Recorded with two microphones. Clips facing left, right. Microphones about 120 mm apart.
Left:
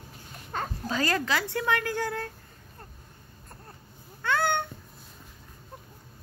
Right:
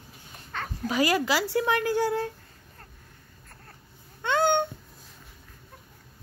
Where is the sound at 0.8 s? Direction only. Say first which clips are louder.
Right 5 dB; 15° right (ahead or behind).